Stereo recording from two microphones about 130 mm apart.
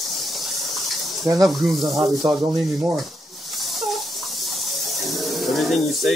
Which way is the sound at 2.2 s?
35° right (ahead or behind).